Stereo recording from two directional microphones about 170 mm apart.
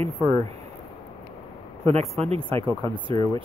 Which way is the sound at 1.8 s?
35° right (ahead or behind).